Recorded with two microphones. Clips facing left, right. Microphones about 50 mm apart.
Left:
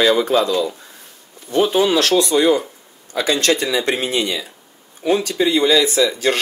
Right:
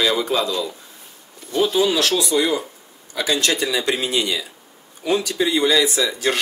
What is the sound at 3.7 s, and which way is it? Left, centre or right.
Speech, left.